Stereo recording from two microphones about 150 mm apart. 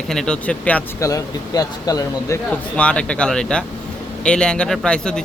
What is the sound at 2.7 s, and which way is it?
Speech, 5° left (ahead or behind).